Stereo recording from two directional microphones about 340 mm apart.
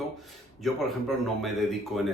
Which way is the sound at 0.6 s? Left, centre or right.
Centre.